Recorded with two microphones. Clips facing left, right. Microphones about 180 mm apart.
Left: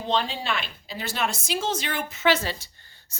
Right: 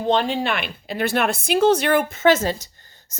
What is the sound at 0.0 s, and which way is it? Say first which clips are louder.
A woman's voice: right 7 dB; 55° right (ahead or behind).